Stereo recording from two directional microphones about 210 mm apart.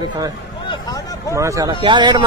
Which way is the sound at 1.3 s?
15° right (ahead or behind).